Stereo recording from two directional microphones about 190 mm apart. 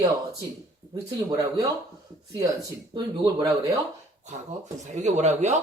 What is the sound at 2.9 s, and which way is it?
Speech, 25° right (ahead or behind).